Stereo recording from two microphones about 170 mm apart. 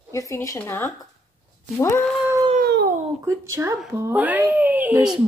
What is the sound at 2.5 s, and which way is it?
Cat, 65° right (ahead or behind).